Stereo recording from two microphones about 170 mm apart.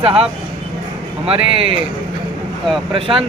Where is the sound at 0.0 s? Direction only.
35° right (ahead or behind).